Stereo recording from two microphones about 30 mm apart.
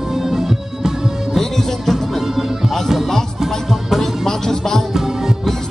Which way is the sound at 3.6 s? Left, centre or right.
Centre.